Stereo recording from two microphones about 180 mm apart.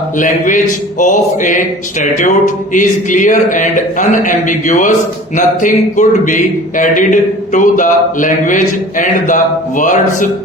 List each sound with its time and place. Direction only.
0.2 s a man's voice: 45° left (ahead or behind)